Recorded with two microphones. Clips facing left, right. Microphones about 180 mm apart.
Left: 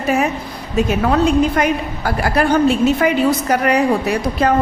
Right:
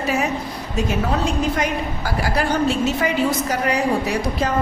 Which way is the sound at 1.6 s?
60° left (ahead or behind).